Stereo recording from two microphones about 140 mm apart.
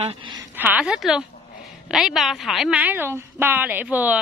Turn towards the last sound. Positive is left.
turn(degrees=-10)  # may be behind; listen again after turning